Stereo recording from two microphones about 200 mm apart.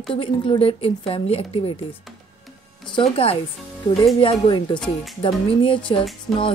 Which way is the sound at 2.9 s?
30° left (ahead or behind).